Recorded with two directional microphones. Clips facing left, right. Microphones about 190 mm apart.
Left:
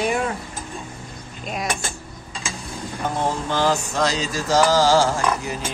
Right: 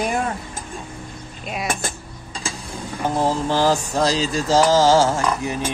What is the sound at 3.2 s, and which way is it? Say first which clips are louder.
Mantra: right 3 dB; 35° right (ahead or behind).